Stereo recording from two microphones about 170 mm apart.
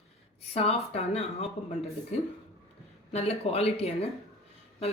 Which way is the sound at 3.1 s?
35° left (ahead or behind).